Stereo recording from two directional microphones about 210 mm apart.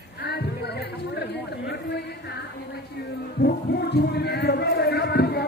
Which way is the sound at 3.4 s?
50° left (ahead or behind).